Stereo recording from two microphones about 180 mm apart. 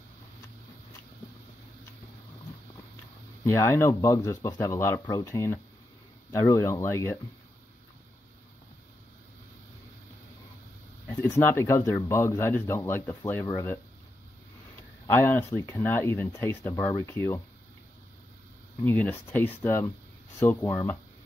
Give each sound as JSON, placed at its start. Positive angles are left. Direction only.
{"t": 3.4, "sound": "speech", "side_deg": 15}
{"t": 11.1, "sound": "speech", "side_deg": 15}
{"t": 15.0, "sound": "speech", "side_deg": 10}
{"t": 18.9, "sound": "speech", "side_deg": 10}